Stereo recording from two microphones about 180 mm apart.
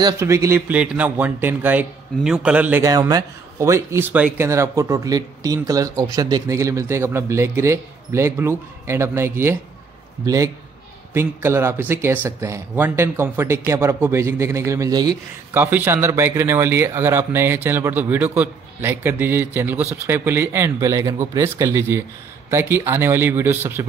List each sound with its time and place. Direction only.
0.0 s speech: 15° right (ahead or behind)
15.5 s speech: 10° right (ahead or behind)